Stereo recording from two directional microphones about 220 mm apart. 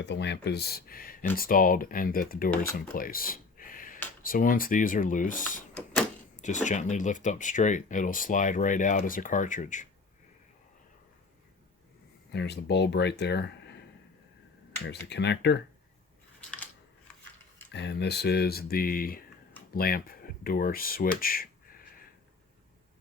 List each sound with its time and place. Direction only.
0.0 s speech: 50° left (ahead or behind)
2.7 s a sound: 40° left (ahead or behind)
4.2 s speech: 40° left (ahead or behind)
12.3 s speech: 50° left (ahead or behind)
15.1 s speech: 50° left (ahead or behind)
17.7 s speech: 50° left (ahead or behind)